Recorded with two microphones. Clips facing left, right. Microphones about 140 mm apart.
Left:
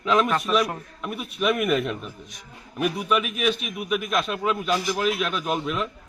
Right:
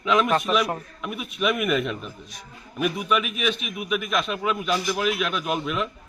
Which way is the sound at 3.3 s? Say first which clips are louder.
Left 2 dB; 40° left (ahead or behind).